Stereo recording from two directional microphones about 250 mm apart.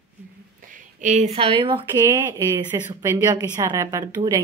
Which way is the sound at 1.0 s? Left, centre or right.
Right.